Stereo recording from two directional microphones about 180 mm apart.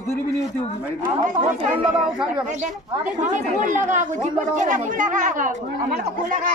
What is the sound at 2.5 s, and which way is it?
A woman's voice, 45° right (ahead or behind).